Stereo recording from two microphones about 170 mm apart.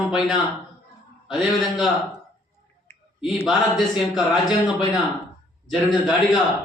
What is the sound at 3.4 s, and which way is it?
A man's voice, centre (ahead or behind).